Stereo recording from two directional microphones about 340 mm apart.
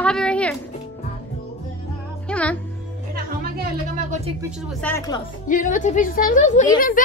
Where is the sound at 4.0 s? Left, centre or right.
Centre.